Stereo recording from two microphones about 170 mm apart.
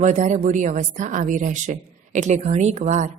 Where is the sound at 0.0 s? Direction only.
45° right (ahead or behind).